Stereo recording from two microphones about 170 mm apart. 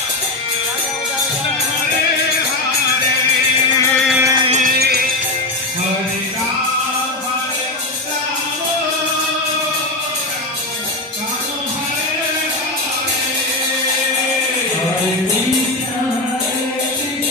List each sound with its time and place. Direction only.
3.7 s a sound: 15° left (ahead or behind)
4.2 s music: 20° right (ahead or behind)
4.5 s music: 45° right (ahead or behind)
4.7 s music: 70° right (ahead or behind)